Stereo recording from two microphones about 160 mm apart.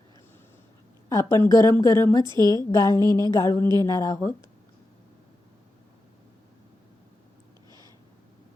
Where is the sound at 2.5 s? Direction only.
25° left (ahead or behind).